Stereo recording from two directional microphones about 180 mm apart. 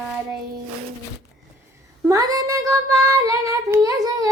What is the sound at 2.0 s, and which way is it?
Child singing, 20° right (ahead or behind).